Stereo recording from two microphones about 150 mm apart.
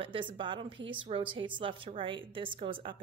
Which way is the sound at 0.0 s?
35° right (ahead or behind).